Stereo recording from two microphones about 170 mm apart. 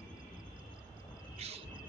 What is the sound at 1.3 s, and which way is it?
Cricket, 35° right (ahead or behind).